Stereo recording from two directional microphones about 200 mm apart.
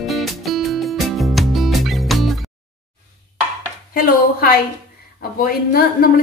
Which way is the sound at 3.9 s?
45° left (ahead or behind).